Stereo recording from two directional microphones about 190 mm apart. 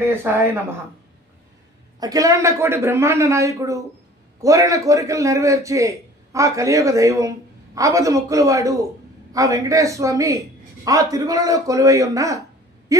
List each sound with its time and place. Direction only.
0.0 s a man's voice: 10° right (ahead or behind)
2.0 s a man's voice: 20° right (ahead or behind)